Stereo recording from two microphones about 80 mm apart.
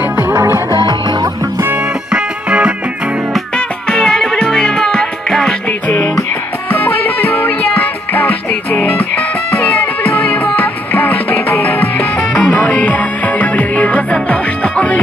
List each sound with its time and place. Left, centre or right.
0.0 s music: right
0.7 s music: right
2.1 s music: centre
3.5 s music: centre
5.7 s music: left
12.2 s music: centre